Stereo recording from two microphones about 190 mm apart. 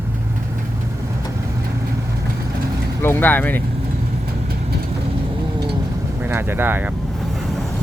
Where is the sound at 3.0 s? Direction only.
10° left (ahead or behind).